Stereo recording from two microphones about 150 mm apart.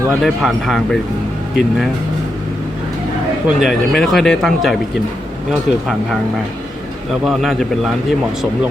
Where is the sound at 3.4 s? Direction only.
Centre (ahead or behind).